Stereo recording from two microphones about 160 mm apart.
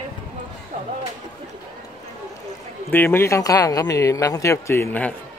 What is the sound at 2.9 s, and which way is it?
Speech, 15° left (ahead or behind).